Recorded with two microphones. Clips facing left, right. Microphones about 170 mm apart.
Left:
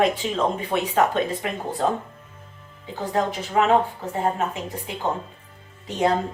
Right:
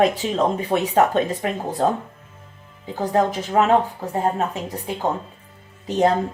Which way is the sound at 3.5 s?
45° right (ahead or behind).